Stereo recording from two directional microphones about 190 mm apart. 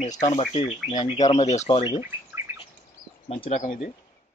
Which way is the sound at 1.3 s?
35° left (ahead or behind).